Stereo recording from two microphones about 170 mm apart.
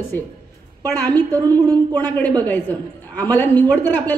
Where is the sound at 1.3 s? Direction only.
10° left (ahead or behind).